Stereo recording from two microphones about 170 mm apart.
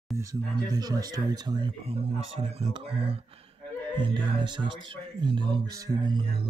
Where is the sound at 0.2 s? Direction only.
20° right (ahead or behind).